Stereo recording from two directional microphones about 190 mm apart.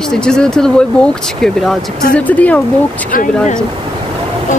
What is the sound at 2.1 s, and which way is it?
Speech, 10° left (ahead or behind).